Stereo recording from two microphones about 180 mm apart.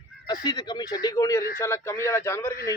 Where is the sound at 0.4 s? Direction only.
20° left (ahead or behind).